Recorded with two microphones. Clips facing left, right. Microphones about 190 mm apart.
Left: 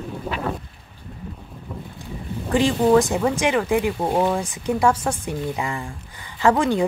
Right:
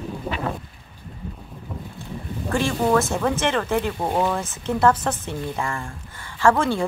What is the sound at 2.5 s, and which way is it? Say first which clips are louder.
Speech: left 4 dB; 15° left (ahead or behind).